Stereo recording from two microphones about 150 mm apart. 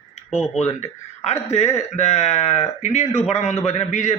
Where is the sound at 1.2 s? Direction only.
45° left (ahead or behind).